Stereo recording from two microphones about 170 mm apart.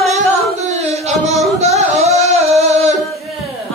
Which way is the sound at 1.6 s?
40° right (ahead or behind).